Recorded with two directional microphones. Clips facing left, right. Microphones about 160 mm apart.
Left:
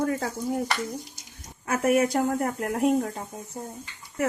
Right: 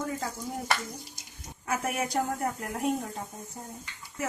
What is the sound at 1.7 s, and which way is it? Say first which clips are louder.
Speech: left 9 dB; 60° left (ahead or behind).